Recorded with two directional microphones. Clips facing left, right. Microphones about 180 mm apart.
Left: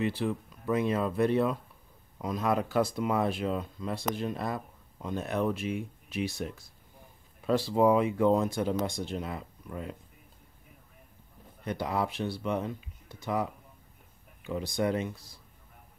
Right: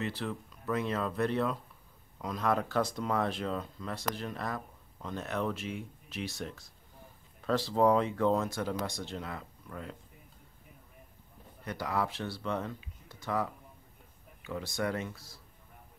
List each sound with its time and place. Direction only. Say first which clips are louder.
0.0 s speech: left 6 dB; 10° left (ahead or behind)
11.6 s speech: left 3 dB; 20° left (ahead or behind)